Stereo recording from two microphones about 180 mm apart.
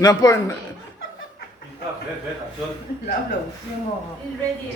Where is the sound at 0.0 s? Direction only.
20° left (ahead or behind).